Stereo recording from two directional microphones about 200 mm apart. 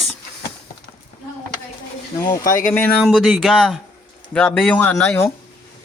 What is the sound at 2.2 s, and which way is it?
Speech, 15° left (ahead or behind).